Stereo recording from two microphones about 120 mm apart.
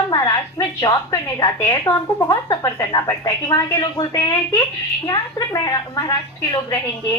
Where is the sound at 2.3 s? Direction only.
35° left (ahead or behind).